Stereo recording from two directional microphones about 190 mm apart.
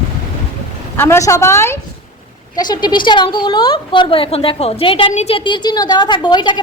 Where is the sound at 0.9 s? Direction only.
15° left (ahead or behind).